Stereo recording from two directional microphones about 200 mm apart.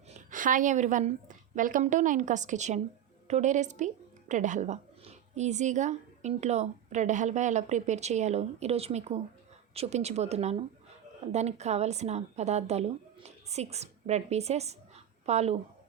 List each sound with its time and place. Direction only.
0.1 s a woman's voice: 40° right (ahead or behind)